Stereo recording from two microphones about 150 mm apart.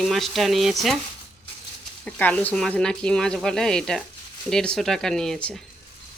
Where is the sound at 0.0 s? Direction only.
Centre (ahead or behind).